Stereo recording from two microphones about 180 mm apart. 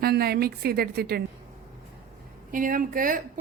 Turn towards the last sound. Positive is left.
turn(degrees=-50)  # may be behind; listen again after turning